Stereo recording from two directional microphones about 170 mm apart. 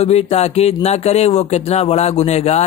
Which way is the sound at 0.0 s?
40° left (ahead or behind).